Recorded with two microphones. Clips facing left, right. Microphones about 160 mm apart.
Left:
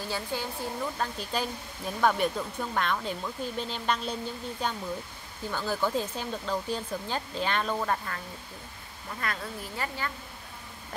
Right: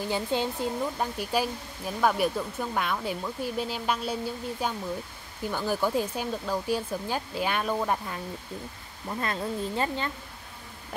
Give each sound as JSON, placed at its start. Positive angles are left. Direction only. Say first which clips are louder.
{"t": 0.1, "sound": "speech", "louder": "right 6 dB", "side_deg": -20}
{"t": 9.2, "sound": "speech", "louder": "right 5 dB", "side_deg": -25}